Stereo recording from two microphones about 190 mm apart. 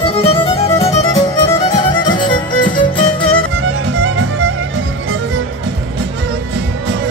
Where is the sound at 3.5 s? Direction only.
80° right.